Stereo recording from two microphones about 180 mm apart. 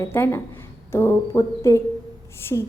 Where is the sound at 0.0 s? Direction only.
15° left (ahead or behind).